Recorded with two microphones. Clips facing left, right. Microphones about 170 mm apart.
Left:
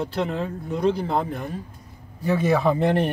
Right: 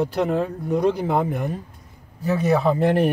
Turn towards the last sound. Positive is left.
turn(degrees=0)  # may be behind; listen again after turning